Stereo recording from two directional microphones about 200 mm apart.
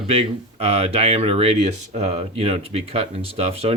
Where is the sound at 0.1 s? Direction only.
30° right (ahead or behind).